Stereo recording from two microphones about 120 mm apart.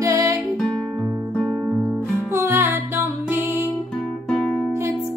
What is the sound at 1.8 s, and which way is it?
Music, 15° right (ahead or behind).